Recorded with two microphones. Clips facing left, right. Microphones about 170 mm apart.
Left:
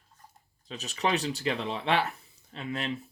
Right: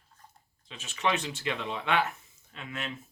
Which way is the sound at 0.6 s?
40° left (ahead or behind).